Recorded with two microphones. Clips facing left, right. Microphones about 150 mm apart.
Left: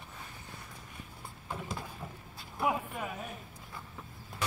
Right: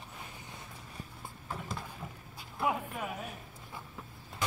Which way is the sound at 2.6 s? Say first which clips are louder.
Left 1 dB; 5° left (ahead or behind).